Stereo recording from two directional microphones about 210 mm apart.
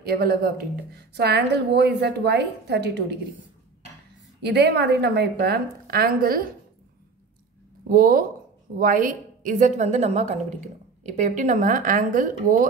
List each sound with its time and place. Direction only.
0.0 s a woman's voice: 45° right (ahead or behind)
4.4 s a woman's voice: 55° right (ahead or behind)
7.9 s a woman's voice: 45° right (ahead or behind)